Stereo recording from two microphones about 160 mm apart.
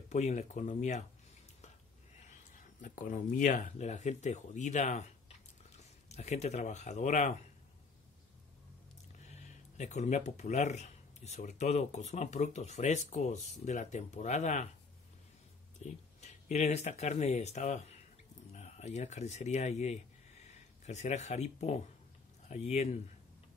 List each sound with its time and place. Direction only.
0.1 s speech: 45° left (ahead or behind)
2.8 s speech: 55° left (ahead or behind)
9.3 s speech: 45° left (ahead or behind)
15.8 s speech: 45° left (ahead or behind)